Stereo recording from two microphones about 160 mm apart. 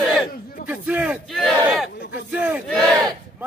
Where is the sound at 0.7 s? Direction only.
10° right (ahead or behind).